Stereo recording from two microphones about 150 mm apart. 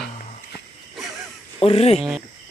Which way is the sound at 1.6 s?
40° left (ahead or behind).